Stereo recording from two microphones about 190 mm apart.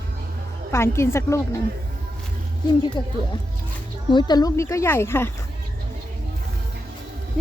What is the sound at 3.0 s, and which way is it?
Speech, 20° left (ahead or behind).